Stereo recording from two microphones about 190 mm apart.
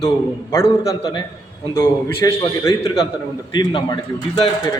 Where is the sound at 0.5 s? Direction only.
20° left (ahead or behind).